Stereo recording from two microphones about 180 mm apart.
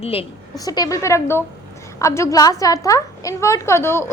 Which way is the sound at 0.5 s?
20° left (ahead or behind).